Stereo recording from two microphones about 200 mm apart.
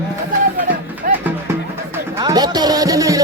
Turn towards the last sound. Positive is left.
turn(degrees=-15)  # may be behind; listen again after turning